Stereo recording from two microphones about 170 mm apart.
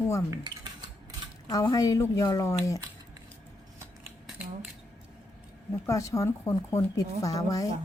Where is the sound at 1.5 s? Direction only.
20° left (ahead or behind).